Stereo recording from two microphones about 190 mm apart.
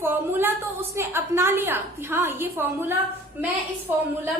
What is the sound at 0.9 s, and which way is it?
A woman's voice, 15° right (ahead or behind).